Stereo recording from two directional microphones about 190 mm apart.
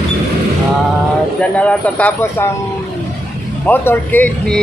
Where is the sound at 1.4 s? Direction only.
5° left (ahead or behind).